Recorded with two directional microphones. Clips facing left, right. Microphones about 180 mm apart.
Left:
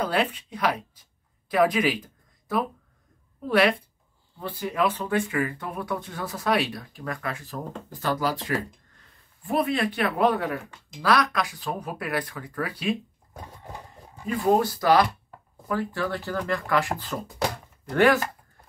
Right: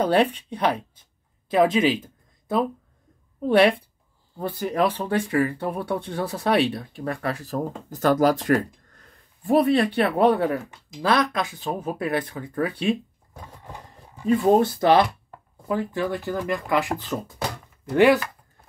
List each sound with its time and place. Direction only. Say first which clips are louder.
0.0 s speech: right 6 dB; 30° right (ahead or behind)
3.4 s speech: right 4 dB; 25° right (ahead or behind)
4.4 s speech: right 3 dB; 45° right (ahead or behind)
7.9 s speech: right 8 dB; 50° right (ahead or behind)
9.5 s speech: right 6 dB; 35° right (ahead or behind)
14.3 s speech: right 4 dB; 25° right (ahead or behind)